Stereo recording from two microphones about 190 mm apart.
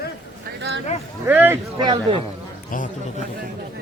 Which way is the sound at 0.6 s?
70° right (ahead or behind).